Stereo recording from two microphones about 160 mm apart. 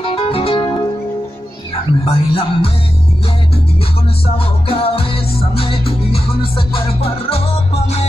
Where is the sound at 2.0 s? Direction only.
35° left (ahead or behind).